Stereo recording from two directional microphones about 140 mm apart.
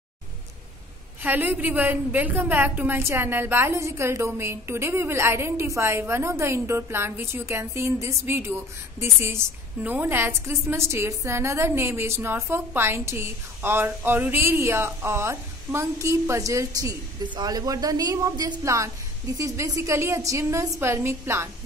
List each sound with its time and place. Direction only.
1.2 s a woman's voice: 15° right (ahead or behind)